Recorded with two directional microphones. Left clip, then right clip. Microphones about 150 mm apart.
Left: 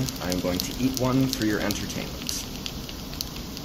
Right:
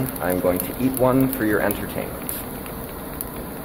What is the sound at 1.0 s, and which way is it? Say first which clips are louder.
Speech: right 7 dB; 25° left (ahead or behind).